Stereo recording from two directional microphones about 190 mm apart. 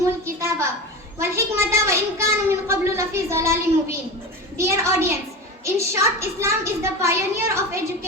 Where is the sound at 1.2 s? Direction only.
15° right (ahead or behind).